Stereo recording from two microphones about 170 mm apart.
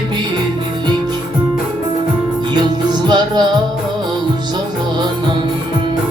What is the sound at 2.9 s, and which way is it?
Music, 25° right (ahead or behind).